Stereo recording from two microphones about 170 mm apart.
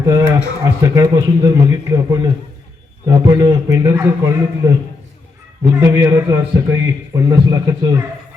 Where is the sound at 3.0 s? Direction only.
20° right (ahead or behind).